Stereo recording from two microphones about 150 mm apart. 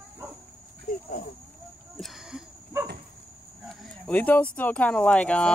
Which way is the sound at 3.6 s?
5° left (ahead or behind).